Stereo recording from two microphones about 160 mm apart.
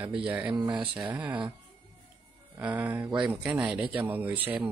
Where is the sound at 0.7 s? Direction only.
10° right (ahead or behind).